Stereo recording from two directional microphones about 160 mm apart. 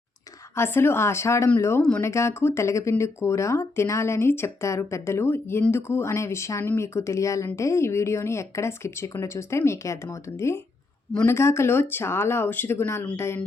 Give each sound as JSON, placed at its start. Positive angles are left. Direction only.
{"t": 0.5, "sound": "speech", "side_deg": 15}